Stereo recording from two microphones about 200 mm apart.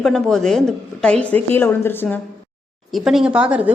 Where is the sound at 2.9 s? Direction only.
Centre (ahead or behind).